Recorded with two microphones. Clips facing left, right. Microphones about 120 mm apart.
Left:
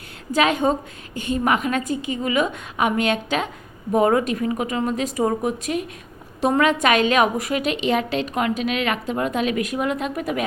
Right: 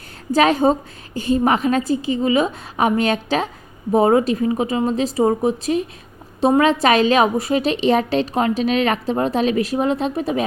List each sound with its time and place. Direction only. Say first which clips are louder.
0.3 s a woman's voice: right 4 dB; 35° right (ahead or behind)